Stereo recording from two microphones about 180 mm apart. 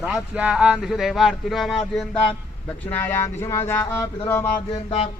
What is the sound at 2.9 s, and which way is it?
Speech, 10° left (ahead or behind).